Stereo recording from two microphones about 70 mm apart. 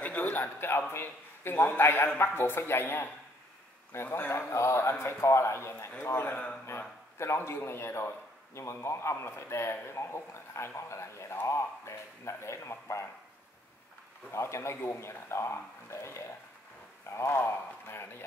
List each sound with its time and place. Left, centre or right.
0.0 s a man's voice: left
6.2 s speech: centre
7.2 s a man's voice: left
14.3 s a man's voice: left